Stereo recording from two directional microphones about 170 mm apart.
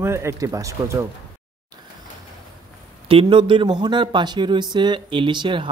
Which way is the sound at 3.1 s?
30° right (ahead or behind).